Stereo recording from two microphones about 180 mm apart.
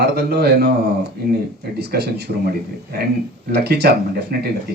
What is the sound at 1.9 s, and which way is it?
Speech, 60° right (ahead or behind).